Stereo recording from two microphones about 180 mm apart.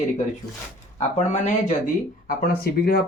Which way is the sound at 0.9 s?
40° left (ahead or behind).